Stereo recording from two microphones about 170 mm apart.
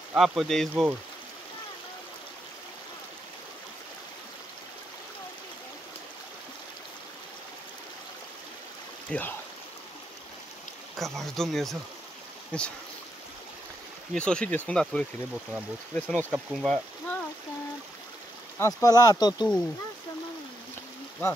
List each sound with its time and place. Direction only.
0.1 s speech: 5° right (ahead or behind)
9.1 s speech: 5° left (ahead or behind)
11.0 s speech: centre (ahead or behind)
14.1 s speech: 5° left (ahead or behind)
18.6 s speech: 20° left (ahead or behind)